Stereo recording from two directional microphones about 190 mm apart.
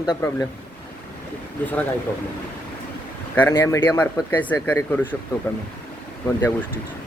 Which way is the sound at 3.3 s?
15° left (ahead or behind).